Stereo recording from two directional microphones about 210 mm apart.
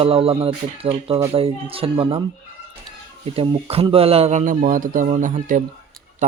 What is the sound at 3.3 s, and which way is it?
Speech, 25° right (ahead or behind).